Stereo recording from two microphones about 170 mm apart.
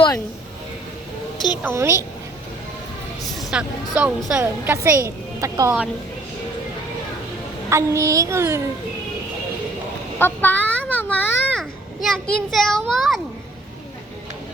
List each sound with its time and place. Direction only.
1.6 s a woman's voice: 15° right (ahead or behind)
3.3 s a woman's voice: 5° right (ahead or behind)
7.7 s a woman's voice: 15° right (ahead or behind)
10.2 s children playing: 10° left (ahead or behind)
11.6 s a child's voice: centre (ahead or behind)